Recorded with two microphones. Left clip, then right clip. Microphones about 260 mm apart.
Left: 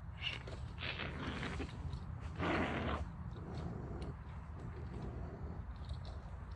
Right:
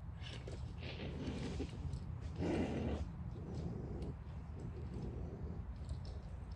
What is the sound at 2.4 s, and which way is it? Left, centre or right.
Roar, left.